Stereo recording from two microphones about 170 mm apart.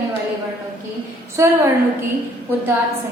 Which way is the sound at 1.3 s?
15° right (ahead or behind).